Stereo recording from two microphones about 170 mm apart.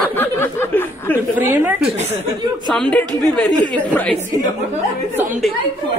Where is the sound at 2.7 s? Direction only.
5° left (ahead or behind).